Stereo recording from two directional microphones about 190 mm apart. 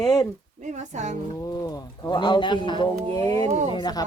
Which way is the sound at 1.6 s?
20° left (ahead or behind).